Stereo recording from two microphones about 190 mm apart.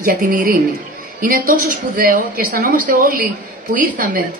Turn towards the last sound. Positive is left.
turn(degrees=-45)  # may be behind; listen again after turning